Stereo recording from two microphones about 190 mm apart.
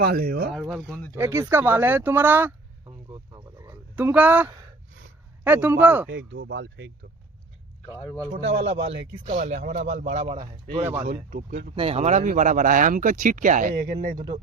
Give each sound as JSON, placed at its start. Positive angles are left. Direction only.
{"t": 0.0, "sound": "speech", "side_deg": -55}
{"t": 0.5, "sound": "speech", "side_deg": 0}
{"t": 1.1, "sound": "speech", "side_deg": -15}
{"t": 3.1, "sound": "a sound", "side_deg": -15}
{"t": 5.4, "sound": "speech", "side_deg": -10}
{"t": 6.1, "sound": "speech", "side_deg": -70}
{"t": 7.9, "sound": "speech", "side_deg": 25}
{"t": 8.6, "sound": "speech", "side_deg": -35}
{"t": 11.0, "sound": "speech", "side_deg": -50}
{"t": 11.7, "sound": "speech", "side_deg": -30}